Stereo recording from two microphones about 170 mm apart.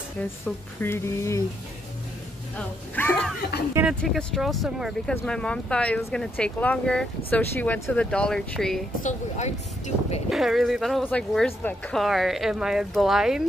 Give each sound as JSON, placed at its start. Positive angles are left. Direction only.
{"t": 0.7, "sound": "speech", "side_deg": 15}
{"t": 2.5, "sound": "speech", "side_deg": 10}
{"t": 9.0, "sound": "speech", "side_deg": 40}
{"t": 10.3, "sound": "speech", "side_deg": 0}